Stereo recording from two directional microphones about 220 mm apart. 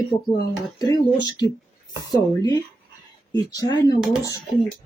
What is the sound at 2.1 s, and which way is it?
Speech, 15° left (ahead or behind).